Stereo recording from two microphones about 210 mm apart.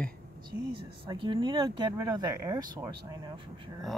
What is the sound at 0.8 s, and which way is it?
Speech, 25° right (ahead or behind).